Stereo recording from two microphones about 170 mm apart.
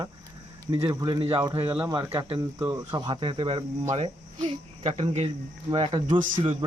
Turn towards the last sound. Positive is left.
turn(degrees=-30)  # may be behind; listen again after turning